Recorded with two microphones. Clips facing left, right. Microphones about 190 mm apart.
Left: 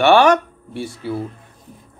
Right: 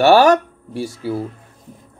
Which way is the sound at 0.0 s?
40° right (ahead or behind).